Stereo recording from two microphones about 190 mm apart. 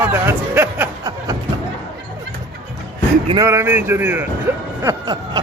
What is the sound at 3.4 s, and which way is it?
Speech, 15° right (ahead or behind).